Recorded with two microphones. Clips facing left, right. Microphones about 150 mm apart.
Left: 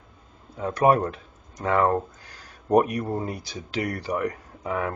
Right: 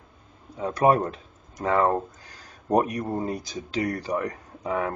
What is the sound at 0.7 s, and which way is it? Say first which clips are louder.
Speech: left 1 dB; 30° right (ahead or behind).